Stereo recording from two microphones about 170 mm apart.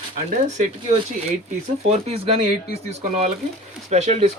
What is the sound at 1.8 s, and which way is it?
Speech, 35° right (ahead or behind).